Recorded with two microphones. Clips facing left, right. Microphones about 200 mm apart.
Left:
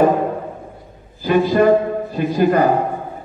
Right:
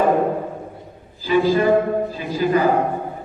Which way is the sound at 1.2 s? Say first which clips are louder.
Left 3 dB; 60° left (ahead or behind).